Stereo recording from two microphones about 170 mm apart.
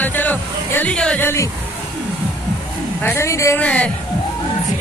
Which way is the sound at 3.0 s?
15° left (ahead or behind).